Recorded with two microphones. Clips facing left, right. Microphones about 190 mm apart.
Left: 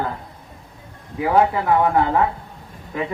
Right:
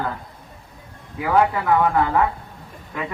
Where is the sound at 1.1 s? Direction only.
25° left (ahead or behind).